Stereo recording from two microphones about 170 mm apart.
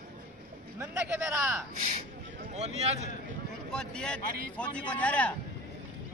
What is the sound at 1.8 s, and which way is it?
Speech, 40° right (ahead or behind).